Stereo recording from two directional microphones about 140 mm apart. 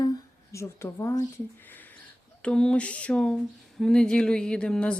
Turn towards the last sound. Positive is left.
turn(degrees=5)  # may be behind; listen again after turning